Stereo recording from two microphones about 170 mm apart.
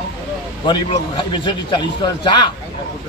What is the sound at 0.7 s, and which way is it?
A man's voice, 25° left (ahead or behind).